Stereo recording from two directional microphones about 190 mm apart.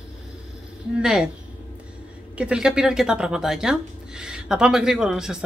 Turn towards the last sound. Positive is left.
turn(degrees=-5)  # may be behind; listen again after turning